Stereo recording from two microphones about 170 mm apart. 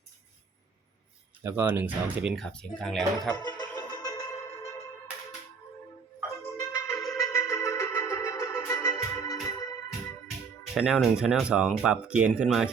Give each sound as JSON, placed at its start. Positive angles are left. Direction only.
{"t": 1.5, "sound": "speech", "side_deg": -10}
{"t": 3.4, "sound": "music", "side_deg": 25}
{"t": 6.6, "sound": "music", "side_deg": 15}
{"t": 8.7, "sound": "organ", "side_deg": 20}
{"t": 10.8, "sound": "speech", "side_deg": -5}